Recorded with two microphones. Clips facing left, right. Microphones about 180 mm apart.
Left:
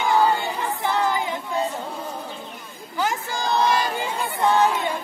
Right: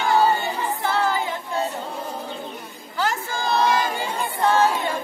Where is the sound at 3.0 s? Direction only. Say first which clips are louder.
Even; 15° left (ahead or behind).